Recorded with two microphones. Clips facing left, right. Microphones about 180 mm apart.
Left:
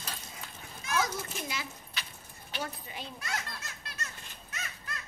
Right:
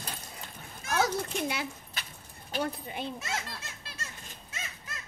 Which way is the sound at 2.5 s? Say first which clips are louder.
Right 6 dB; 55° right (ahead or behind).